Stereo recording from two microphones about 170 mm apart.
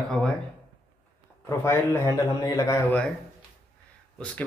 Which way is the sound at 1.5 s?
15° left (ahead or behind).